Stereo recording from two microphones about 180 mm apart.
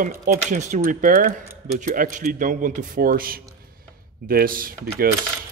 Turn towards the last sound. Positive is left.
turn(degrees=-55)  # may be behind; listen again after turning